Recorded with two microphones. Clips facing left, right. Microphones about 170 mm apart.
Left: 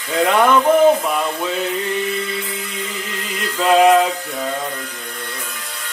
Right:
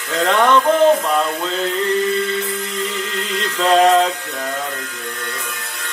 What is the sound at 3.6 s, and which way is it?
Mantra, 10° left (ahead or behind).